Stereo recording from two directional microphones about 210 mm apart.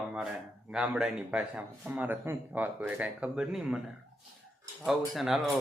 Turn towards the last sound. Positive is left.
turn(degrees=0)  # may be behind; listen again after turning